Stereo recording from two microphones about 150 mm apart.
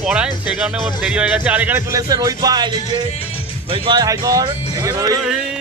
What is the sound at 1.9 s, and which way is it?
Speech, 25° right (ahead or behind).